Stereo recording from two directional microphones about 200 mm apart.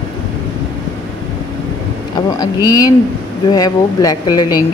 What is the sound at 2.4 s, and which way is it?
Speech, 20° left (ahead or behind).